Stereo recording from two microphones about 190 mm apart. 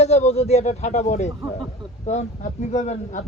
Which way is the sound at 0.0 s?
35° left (ahead or behind).